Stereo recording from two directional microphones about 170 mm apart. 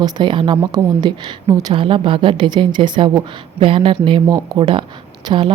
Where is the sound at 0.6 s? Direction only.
15° right (ahead or behind).